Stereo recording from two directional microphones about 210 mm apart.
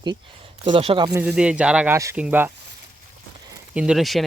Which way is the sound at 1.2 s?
5° right (ahead or behind).